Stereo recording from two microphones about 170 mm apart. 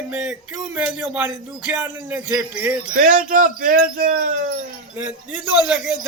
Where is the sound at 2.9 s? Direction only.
50° right (ahead or behind).